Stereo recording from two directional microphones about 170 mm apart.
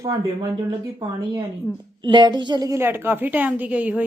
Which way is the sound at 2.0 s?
25° right (ahead or behind).